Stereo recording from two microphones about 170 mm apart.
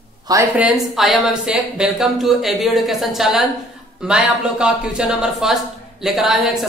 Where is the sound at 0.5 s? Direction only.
5° right (ahead or behind).